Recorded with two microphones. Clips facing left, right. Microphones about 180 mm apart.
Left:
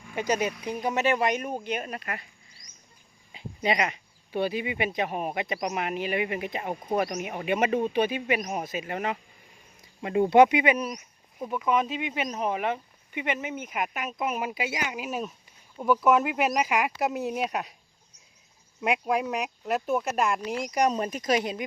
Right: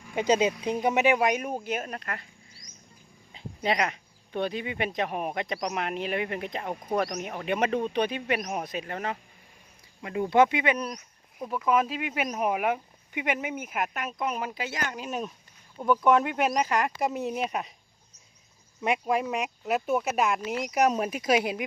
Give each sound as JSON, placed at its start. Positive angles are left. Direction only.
{"t": 0.1, "sound": "speech", "side_deg": -20}
{"t": 1.9, "sound": "speech", "side_deg": 10}
{"t": 3.3, "sound": "speech", "side_deg": 5}
{"t": 8.9, "sound": "speech", "side_deg": 15}
{"t": 18.8, "sound": "speech", "side_deg": 0}